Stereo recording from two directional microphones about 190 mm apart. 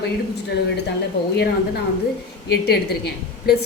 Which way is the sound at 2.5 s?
55° left (ahead or behind).